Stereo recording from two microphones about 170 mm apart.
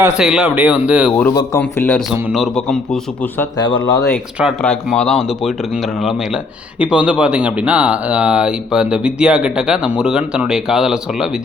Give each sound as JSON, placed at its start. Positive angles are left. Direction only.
{"t": 0.2, "sound": "speech", "side_deg": -5}
{"t": 1.3, "sound": "speech", "side_deg": 20}
{"t": 2.3, "sound": "speech", "side_deg": 0}
{"t": 3.6, "sound": "speech", "side_deg": 25}
{"t": 4.6, "sound": "speech", "side_deg": 5}